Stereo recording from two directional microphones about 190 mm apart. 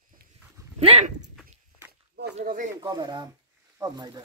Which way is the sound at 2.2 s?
55° right (ahead or behind).